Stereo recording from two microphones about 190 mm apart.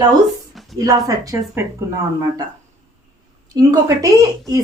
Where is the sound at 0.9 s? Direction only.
20° right (ahead or behind).